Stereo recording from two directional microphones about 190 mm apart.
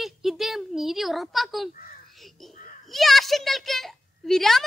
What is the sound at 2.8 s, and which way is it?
A child's voice, centre (ahead or behind).